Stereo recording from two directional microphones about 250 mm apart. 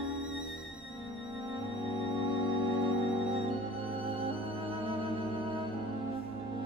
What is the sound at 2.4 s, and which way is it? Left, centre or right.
Music, centre.